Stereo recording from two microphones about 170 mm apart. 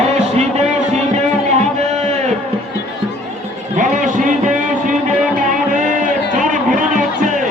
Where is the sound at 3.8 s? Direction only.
50° right (ahead or behind).